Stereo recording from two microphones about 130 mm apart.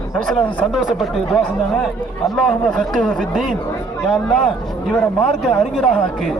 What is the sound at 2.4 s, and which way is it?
Speech, 5° left (ahead or behind).